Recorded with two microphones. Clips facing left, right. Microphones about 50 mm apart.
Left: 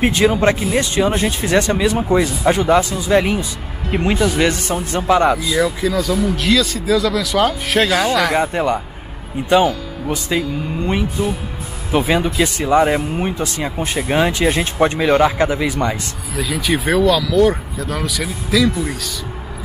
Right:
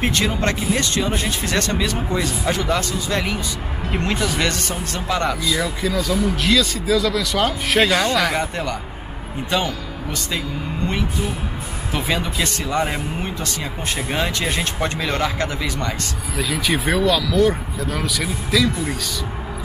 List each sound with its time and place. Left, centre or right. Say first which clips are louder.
0.0 s speech: left 6 dB; centre
8.4 s speech: left 7 dB; centre
11.9 s speech: left 7 dB; centre
16.3 s speech: left 2 dB; centre